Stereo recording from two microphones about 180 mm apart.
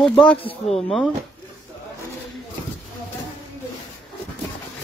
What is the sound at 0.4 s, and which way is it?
Speech, 35° left (ahead or behind).